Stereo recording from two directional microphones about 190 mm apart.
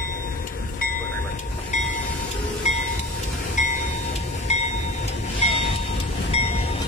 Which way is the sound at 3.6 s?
40° left (ahead or behind).